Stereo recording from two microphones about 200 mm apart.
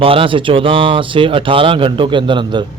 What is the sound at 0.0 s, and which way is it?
Speech, 25° right (ahead or behind).